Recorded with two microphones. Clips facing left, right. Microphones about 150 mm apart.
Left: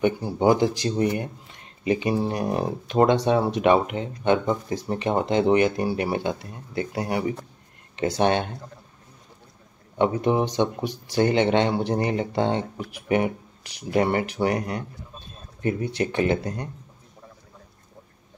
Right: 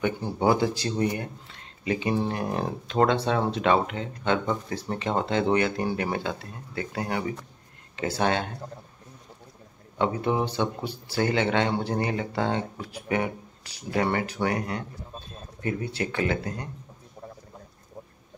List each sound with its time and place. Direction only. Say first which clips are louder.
0.0 s speech: left 4 dB; 20° left (ahead or behind)
10.2 s speech: left 4 dB; 15° left (ahead or behind)